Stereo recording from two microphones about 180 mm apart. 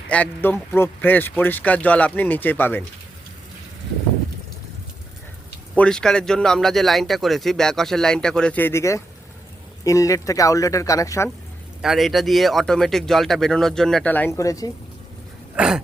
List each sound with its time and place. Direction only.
0.1 s speech: 10° left (ahead or behind)
5.7 s speech: 5° left (ahead or behind)
11.8 s speech: centre (ahead or behind); by 14.7 s 20° left (ahead or behind)
15.5 s speech: 5° right (ahead or behind)